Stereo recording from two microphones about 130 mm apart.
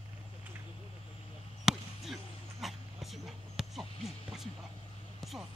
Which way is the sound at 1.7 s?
Centre (ahead or behind).